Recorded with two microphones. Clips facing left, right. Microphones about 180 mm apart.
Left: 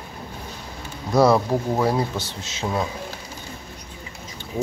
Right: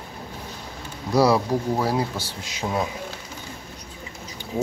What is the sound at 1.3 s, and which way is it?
Speech, centre (ahead or behind).